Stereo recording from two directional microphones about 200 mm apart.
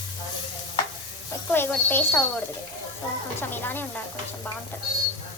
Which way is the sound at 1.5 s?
10° left (ahead or behind).